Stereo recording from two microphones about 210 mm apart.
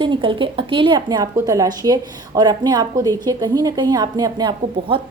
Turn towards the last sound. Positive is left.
turn(degrees=-20)  # may be behind; listen again after turning